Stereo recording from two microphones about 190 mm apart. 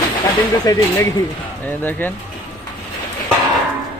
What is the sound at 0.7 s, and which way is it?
Speech, 15° left (ahead or behind).